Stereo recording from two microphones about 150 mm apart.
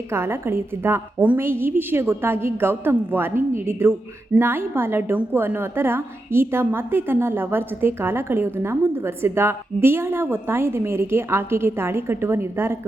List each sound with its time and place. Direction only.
0.1 s a woman's voice: 15° right (ahead or behind)